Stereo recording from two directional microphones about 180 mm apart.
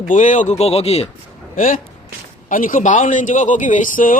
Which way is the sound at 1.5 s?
45° left (ahead or behind).